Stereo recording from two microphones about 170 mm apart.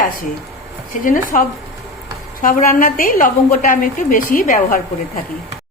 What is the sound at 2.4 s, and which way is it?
A woman's voice, 55° left (ahead or behind).